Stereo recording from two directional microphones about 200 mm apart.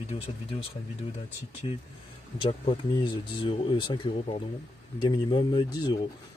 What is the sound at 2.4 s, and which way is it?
Speech, 25° left (ahead or behind).